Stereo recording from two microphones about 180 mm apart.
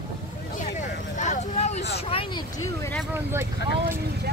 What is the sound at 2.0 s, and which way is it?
Vehicle, 30° left (ahead or behind).